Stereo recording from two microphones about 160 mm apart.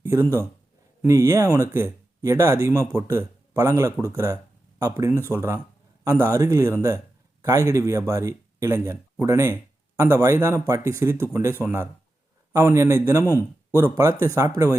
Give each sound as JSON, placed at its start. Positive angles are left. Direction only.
{"t": 0.0, "sound": "a man's voice", "side_deg": -20}